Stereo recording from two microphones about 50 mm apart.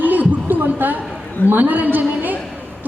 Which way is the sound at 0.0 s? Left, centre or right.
Right.